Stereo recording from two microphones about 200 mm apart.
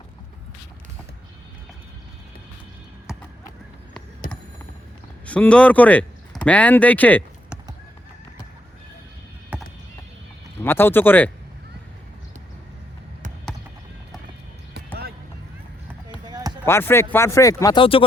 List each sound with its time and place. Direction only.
3.1 s a sound: 5° right (ahead or behind)
5.2 s speech: 5° left (ahead or behind)
9.5 s a sound: 5° right (ahead or behind)
10.6 s speech: 10° left (ahead or behind)
16.2 s basketball bounce: 20° right (ahead or behind)
16.6 s speech: 10° left (ahead or behind)